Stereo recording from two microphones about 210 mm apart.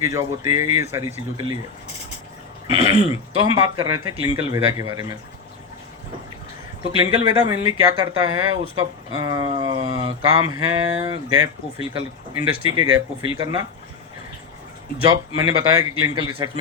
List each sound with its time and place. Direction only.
0.0 s speech: 15° right (ahead or behind)
2.6 s throat clearing: 30° right (ahead or behind)
3.1 s speech: 20° right (ahead or behind)
7.0 s speech: 20° right (ahead or behind)
15.0 s speech: 20° right (ahead or behind)